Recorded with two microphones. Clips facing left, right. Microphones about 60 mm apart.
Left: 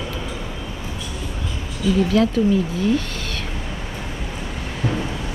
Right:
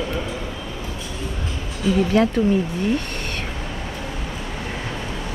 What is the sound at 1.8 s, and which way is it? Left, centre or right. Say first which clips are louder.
Speech: even; right.